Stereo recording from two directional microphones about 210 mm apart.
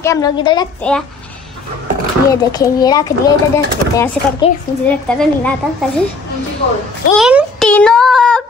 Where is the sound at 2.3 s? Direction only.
20° left (ahead or behind).